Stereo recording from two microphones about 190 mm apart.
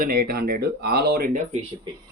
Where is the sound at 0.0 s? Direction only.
50° right (ahead or behind).